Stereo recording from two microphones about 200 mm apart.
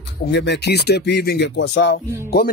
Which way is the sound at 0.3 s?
60° left (ahead or behind).